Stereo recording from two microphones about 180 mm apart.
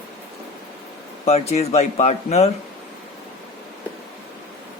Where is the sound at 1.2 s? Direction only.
35° left (ahead or behind).